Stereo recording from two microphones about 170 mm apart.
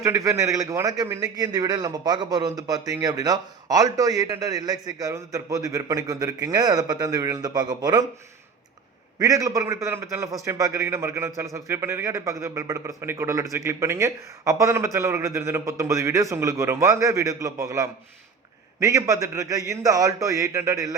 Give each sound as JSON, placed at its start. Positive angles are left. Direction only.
{"t": 0.0, "sound": "a man's voice", "side_deg": -20}
{"t": 9.1, "sound": "a man's voice", "side_deg": -20}